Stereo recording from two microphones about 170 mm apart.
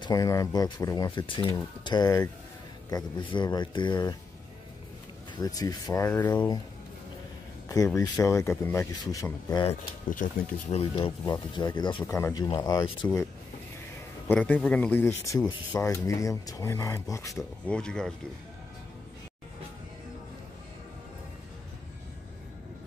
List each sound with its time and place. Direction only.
0.0 s speech: 20° left (ahead or behind)
5.3 s speech: 20° left (ahead or behind)
7.6 s speech: 20° left (ahead or behind)
10.0 s speech: 50° left (ahead or behind)
10.8 s speech: 35° left (ahead or behind); by 13.2 s 15° left (ahead or behind)
14.2 s speech: 10° left (ahead or behind)
17.4 s speech: 5° left (ahead or behind)